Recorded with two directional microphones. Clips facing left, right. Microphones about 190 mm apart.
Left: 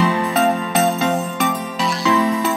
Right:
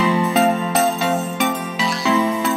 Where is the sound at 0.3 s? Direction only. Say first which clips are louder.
Right 1 dB; centre (ahead or behind).